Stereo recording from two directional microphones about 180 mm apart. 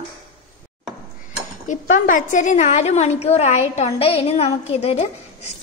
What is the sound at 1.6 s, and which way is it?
A woman's voice, 45° left (ahead or behind).